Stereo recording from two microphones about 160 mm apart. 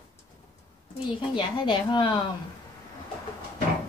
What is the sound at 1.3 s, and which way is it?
Speech, 30° left (ahead or behind).